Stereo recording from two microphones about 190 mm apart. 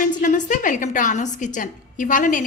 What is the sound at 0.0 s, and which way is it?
A woman's voice, 40° left (ahead or behind).